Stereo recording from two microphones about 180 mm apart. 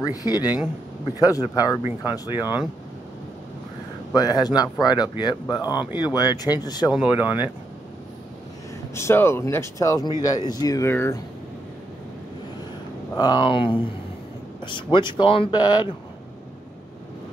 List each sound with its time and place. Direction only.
0.0 s speech: 20° left (ahead or behind)
4.1 s speech: 20° left (ahead or behind)
6.9 s speech: 10° right (ahead or behind)
8.9 s speech: 15° left (ahead or behind)
13.1 s speech: 25° left (ahead or behind)